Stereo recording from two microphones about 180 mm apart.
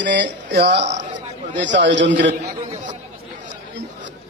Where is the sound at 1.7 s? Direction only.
80° right.